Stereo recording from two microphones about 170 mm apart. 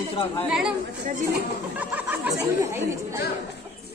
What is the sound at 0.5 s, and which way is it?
Speech, 5° right (ahead or behind).